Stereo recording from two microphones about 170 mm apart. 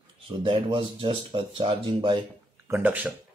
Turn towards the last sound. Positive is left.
turn(degrees=-10)  # may be behind; listen again after turning